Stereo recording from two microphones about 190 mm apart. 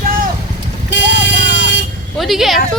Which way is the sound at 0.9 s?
70° left (ahead or behind).